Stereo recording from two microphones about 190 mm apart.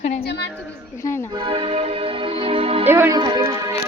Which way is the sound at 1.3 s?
25° right (ahead or behind).